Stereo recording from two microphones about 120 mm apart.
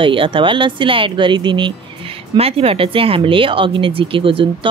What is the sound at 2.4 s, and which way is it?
Speech, 55° right (ahead or behind).